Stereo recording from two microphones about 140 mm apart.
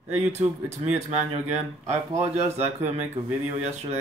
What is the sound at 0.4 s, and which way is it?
Speech, 45° right (ahead or behind).